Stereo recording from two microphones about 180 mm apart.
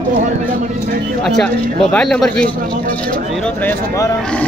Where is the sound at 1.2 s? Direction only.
5° left (ahead or behind).